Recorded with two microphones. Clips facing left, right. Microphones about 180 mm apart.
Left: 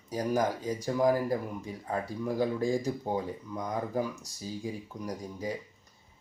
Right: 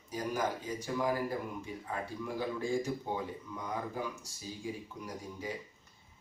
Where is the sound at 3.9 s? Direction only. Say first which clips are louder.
Left 7 dB; 40° left (ahead or behind).